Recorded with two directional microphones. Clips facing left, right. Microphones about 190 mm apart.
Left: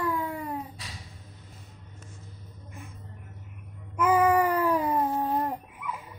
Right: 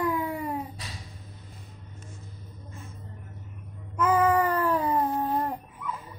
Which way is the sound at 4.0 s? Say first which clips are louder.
Left 1 dB; 10° left (ahead or behind).